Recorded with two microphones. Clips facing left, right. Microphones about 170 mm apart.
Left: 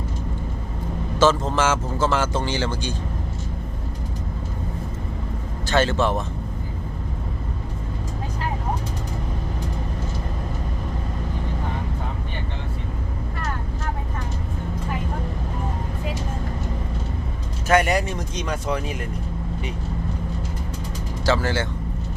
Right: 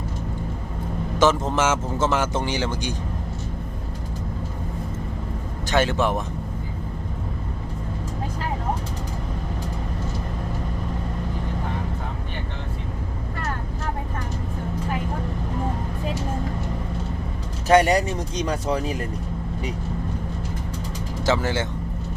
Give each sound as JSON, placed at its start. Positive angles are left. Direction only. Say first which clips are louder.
{"t": 1.2, "sound": "speech", "louder": "left 1 dB", "side_deg": -20}
{"t": 5.6, "sound": "speech", "louder": "left 1 dB", "side_deg": -15}
{"t": 17.7, "sound": "speech", "louder": "right 2 dB", "side_deg": -35}
{"t": 21.2, "sound": "speech", "louder": "left 1 dB", "side_deg": -20}